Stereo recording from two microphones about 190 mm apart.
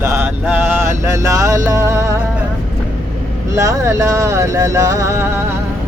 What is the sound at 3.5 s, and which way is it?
Speech, 15° right (ahead or behind).